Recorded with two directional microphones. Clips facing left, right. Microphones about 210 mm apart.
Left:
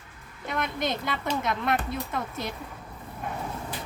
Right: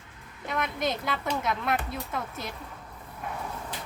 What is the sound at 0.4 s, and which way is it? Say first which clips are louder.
Speech: even; centre (ahead or behind).